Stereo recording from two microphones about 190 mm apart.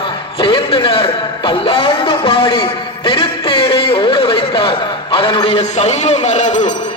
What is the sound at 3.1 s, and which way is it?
Music, 30° left (ahead or behind).